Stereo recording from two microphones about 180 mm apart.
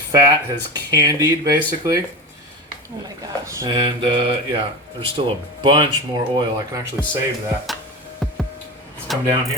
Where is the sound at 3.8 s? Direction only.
30° right (ahead or behind).